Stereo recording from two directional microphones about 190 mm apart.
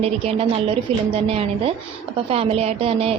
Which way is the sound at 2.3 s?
30° right (ahead or behind).